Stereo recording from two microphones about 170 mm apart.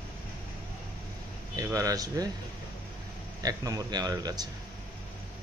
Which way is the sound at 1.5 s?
20° right (ahead or behind).